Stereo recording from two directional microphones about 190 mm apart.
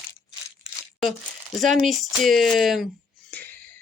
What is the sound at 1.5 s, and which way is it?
Speech, centre (ahead or behind).